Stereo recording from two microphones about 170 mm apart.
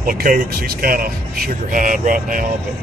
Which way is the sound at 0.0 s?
55° right (ahead or behind).